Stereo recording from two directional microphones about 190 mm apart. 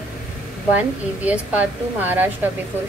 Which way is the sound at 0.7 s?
5° right (ahead or behind).